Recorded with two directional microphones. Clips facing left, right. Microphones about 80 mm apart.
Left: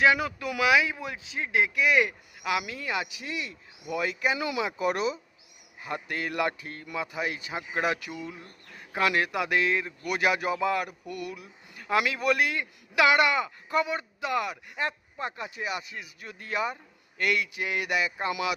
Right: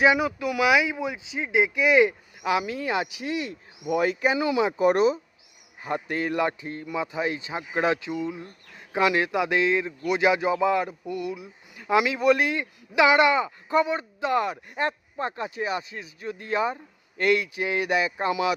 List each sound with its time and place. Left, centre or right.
0.0 s a man's voice: centre; by 18.5 s right